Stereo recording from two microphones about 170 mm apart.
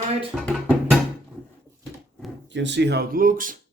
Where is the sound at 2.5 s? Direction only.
90° right; by 3.6 s 55° right (ahead or behind).